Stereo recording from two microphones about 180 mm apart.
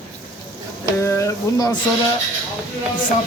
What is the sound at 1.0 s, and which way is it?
Speech, 15° left (ahead or behind).